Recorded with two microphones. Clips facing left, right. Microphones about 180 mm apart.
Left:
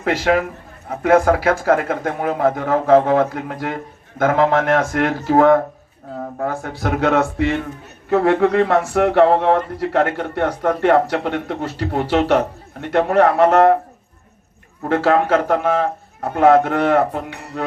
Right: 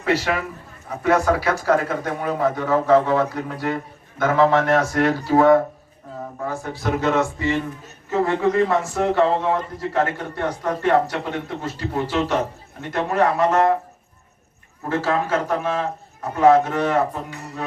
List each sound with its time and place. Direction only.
0.1 s speech: 50° left (ahead or behind)
6.4 s speech: 65° left (ahead or behind)
14.8 s speech: 65° left (ahead or behind)